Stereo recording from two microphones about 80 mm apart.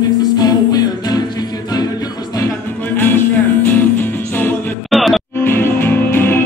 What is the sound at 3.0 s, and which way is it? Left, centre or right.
Music, left.